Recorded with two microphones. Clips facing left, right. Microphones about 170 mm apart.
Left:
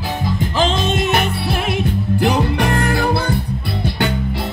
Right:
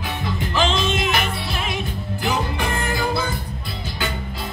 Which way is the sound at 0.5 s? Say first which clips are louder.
Left 2 dB; 45° left (ahead or behind).